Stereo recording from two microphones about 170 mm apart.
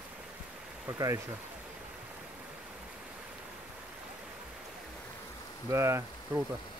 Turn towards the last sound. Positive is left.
turn(degrees=-15)  # may be behind; listen again after turning